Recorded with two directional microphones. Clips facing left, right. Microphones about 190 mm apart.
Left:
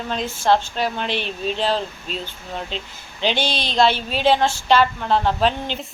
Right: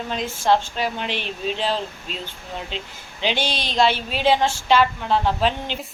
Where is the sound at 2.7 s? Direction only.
5° right (ahead or behind).